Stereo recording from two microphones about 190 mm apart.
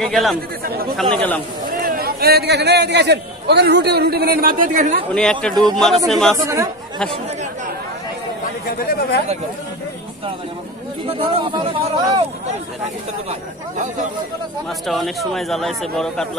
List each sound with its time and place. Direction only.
0.0 s speech: centre (ahead or behind)
1.8 s a man's voice: 50° right (ahead or behind)
5.1 s speech: 5° left (ahead or behind)
5.5 s speech: 20° right (ahead or behind)
5.8 s speech: centre (ahead or behind)
6.4 s speech: 15° right (ahead or behind)
8.6 s speech: 55° left (ahead or behind)
11.1 s speech: 30° right (ahead or behind)
14.9 s speech: centre (ahead or behind)